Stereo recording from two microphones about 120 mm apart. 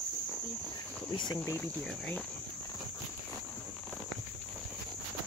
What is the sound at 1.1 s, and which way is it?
Speech, 40° left (ahead or behind).